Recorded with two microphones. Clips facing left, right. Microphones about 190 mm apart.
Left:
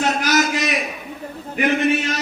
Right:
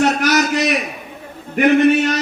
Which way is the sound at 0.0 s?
65° right (ahead or behind).